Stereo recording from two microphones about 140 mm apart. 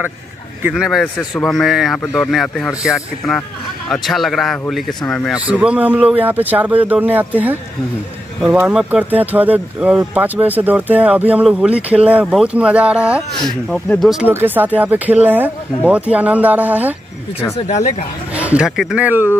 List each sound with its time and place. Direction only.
0.6 s a man's voice: 10° right (ahead or behind)
5.3 s speech: 10° right (ahead or behind)
13.4 s a man's voice: 5° left (ahead or behind)
14.2 s speech: 15° right (ahead or behind)
17.6 s speech: 55° left (ahead or behind)
18.3 s a sound: 10° right (ahead or behind)
18.8 s speech: 5° right (ahead or behind)